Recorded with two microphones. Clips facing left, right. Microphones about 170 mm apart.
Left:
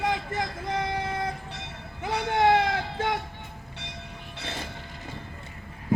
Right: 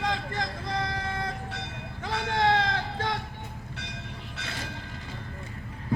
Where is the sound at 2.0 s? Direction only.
15° left (ahead or behind).